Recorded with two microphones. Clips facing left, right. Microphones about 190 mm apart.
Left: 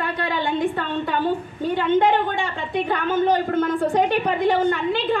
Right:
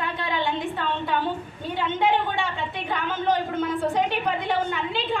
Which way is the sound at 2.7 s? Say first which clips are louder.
Left 7 dB; 50° left (ahead or behind).